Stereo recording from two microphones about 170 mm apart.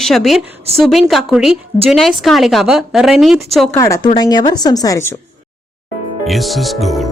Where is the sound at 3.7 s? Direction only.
15° left (ahead or behind).